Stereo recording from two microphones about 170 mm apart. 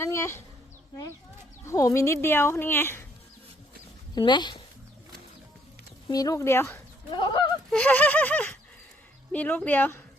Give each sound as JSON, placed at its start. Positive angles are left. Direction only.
{"t": 0.0, "sound": "bee", "side_deg": 15}
{"t": 1.6, "sound": "speech", "side_deg": 15}
{"t": 4.1, "sound": "speech", "side_deg": 25}
{"t": 6.1, "sound": "speech", "side_deg": 20}
{"t": 7.1, "sound": "speech", "side_deg": 30}
{"t": 7.7, "sound": "speech", "side_deg": 10}